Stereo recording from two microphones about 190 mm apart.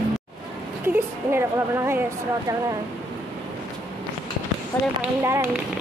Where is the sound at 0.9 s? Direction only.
10° right (ahead or behind).